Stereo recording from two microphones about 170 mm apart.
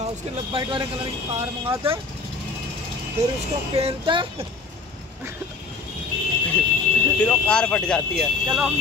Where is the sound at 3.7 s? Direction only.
30° right (ahead or behind).